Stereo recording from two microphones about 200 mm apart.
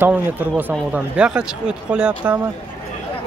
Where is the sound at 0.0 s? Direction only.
10° right (ahead or behind).